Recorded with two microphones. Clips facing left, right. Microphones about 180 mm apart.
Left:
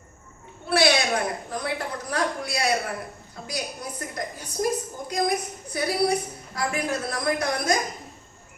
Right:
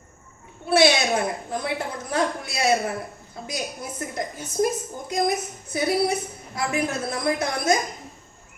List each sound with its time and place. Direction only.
0.7 s a woman's voice: 25° right (ahead or behind)